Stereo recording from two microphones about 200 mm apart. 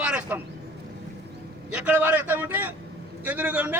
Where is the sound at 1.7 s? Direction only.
5° right (ahead or behind).